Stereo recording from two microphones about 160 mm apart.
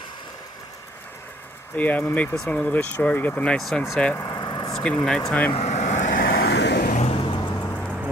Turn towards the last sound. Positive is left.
turn(degrees=10)  # may be behind; listen again after turning